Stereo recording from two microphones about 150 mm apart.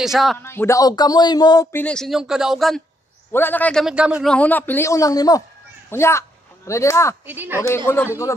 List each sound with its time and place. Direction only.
0.0 s speech: centre (ahead or behind)
0.4 s speech: 15° left (ahead or behind)
1.7 s speech: 10° left (ahead or behind)
3.3 s a man's voice: 15° left (ahead or behind)
3.8 s a man's voice: 5° right (ahead or behind)
4.3 s a man's voice: 10° left (ahead or behind)
7.2 s a man's voice: 15° right (ahead or behind)
7.6 s a man's voice: 15° left (ahead or behind)